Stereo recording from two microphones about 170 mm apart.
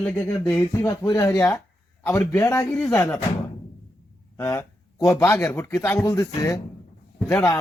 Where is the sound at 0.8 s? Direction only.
20° left (ahead or behind).